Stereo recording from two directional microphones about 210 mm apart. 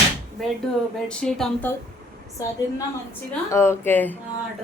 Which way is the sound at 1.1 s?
5° left (ahead or behind).